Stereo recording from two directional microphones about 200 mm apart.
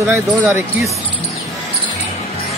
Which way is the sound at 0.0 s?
10° right (ahead or behind).